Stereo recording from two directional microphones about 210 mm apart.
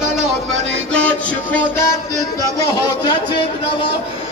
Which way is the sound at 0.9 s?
5° left (ahead or behind).